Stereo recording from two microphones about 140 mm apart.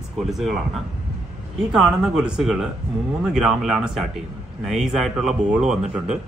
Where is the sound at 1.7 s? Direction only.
5° right (ahead or behind).